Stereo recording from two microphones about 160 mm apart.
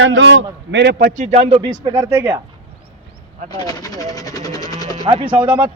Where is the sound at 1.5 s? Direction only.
25° right (ahead or behind).